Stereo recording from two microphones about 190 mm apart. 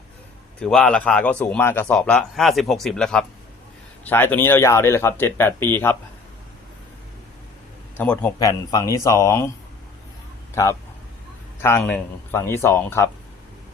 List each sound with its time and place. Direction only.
0.6 s speech: 5° left (ahead or behind)
7.9 s speech: 5° left (ahead or behind)
8.4 s speech: 15° left (ahead or behind)
10.5 s speech: 15° left (ahead or behind)
11.8 s speech: 10° left (ahead or behind)